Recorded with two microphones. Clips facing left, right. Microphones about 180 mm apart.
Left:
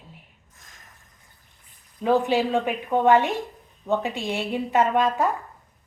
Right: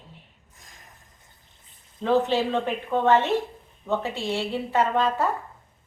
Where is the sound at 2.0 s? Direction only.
10° left (ahead or behind).